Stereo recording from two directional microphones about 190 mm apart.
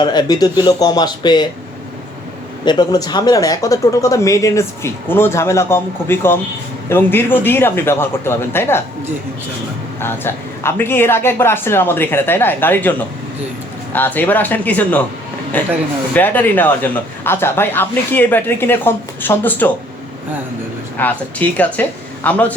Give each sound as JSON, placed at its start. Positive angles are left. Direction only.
{"t": 0.0, "sound": "speech", "side_deg": 20}
{"t": 2.6, "sound": "speech", "side_deg": 20}
{"t": 10.0, "sound": "speech", "side_deg": 10}
{"t": 21.0, "sound": "speech", "side_deg": 10}